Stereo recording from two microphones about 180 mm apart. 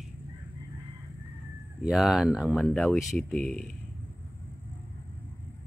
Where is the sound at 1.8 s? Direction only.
Centre (ahead or behind).